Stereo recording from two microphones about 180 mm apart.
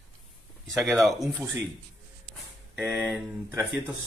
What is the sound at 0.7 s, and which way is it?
Speech, centre (ahead or behind).